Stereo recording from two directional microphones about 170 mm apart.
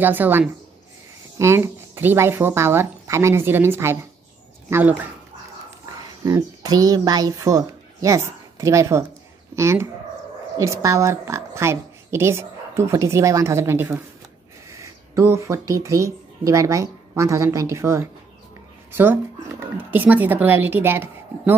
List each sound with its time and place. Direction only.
0.0 s speech: 10° right (ahead or behind)
6.2 s speech: 20° right (ahead or behind)